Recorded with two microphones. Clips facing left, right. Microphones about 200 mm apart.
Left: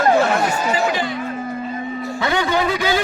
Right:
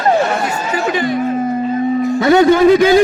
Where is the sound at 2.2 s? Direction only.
45° right (ahead or behind).